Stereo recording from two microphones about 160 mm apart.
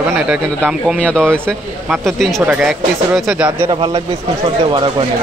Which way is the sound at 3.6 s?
30° right (ahead or behind).